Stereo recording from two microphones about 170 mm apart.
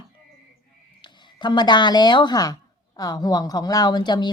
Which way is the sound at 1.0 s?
25° left (ahead or behind).